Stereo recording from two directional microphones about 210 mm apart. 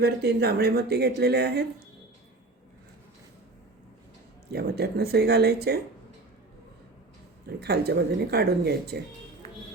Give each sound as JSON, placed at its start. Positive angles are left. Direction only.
{"t": 0.0, "sound": "speech", "side_deg": -50}
{"t": 4.5, "sound": "speech", "side_deg": -50}
{"t": 7.6, "sound": "speech", "side_deg": -50}
{"t": 9.4, "sound": "music", "side_deg": -30}